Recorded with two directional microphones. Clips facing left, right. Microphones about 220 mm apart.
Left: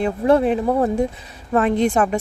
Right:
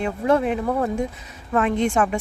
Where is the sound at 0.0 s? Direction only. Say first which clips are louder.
Left 4 dB; 35° left (ahead or behind).